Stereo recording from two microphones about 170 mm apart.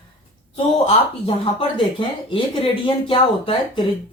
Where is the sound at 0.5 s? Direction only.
35° left (ahead or behind).